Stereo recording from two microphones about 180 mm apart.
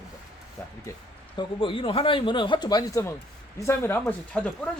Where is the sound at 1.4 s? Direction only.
30° left (ahead or behind); by 4.5 s 5° left (ahead or behind).